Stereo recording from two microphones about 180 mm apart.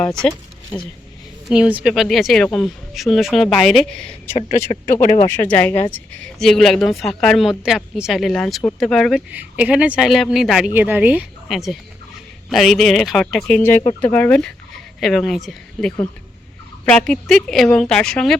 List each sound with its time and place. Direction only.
0.0 s speech: 5° left (ahead or behind)
4.3 s speech: 35° left (ahead or behind)
5.2 s speech: 15° left (ahead or behind)